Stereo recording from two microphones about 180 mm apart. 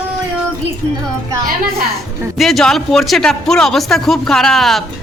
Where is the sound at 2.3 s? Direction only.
Centre (ahead or behind).